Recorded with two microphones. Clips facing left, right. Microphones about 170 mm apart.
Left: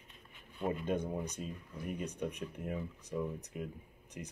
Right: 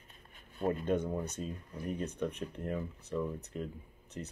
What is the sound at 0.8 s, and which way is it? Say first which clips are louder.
Speech: right 3 dB; 10° left (ahead or behind).